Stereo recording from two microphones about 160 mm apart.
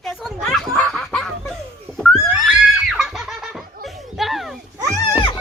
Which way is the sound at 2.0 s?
Centre (ahead or behind).